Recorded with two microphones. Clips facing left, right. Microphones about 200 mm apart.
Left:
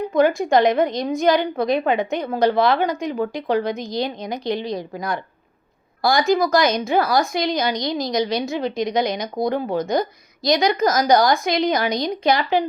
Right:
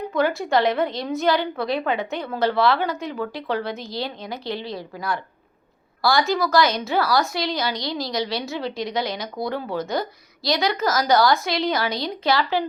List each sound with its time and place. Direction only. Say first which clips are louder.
0.1 s a woman's voice: left 4 dB; 15° left (ahead or behind)